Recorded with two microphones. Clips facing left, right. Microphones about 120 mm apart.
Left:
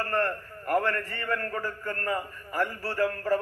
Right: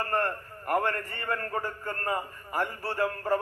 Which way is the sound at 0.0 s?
20° right (ahead or behind).